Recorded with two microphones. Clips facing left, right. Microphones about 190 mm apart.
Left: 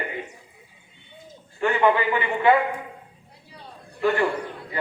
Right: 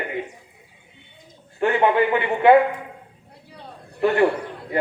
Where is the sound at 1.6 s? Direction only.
60° right (ahead or behind).